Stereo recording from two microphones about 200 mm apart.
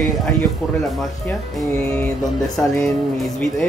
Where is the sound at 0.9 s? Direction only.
5° left (ahead or behind).